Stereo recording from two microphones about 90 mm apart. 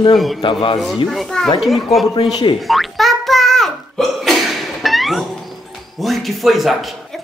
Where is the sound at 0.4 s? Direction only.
70° left (ahead or behind).